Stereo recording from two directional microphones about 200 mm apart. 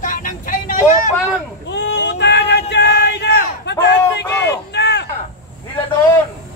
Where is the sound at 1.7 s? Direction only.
60° left (ahead or behind).